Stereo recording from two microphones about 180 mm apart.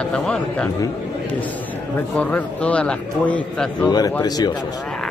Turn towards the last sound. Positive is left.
turn(degrees=20)  # may be behind; listen again after turning